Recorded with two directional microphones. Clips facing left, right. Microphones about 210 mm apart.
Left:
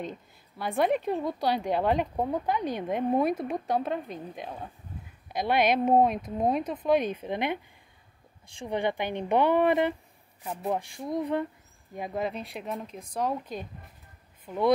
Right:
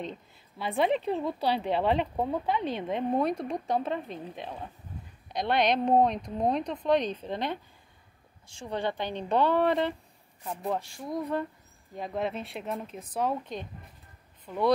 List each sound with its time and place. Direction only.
0.6 s speech: centre (ahead or behind)
8.5 s a woman's voice: 15° left (ahead or behind)
12.2 s speech: centre (ahead or behind)